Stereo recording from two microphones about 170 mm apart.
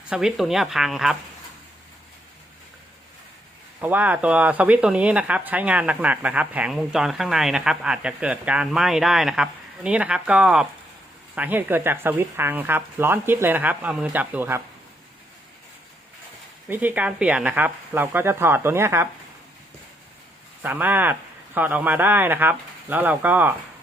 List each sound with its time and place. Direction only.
0.1 s speech: 5° right (ahead or behind)
3.8 s speech: 10° right (ahead or behind)
16.6 s speech: 10° right (ahead or behind)
20.6 s speech: 10° right (ahead or behind)